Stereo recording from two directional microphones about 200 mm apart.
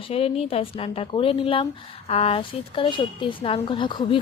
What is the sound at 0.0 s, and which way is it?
A woman's voice, 30° left (ahead or behind).